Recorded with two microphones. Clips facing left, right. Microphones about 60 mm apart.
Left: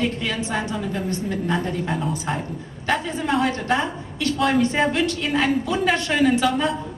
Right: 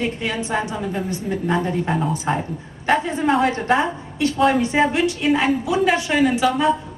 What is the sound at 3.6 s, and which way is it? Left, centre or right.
Speech, centre.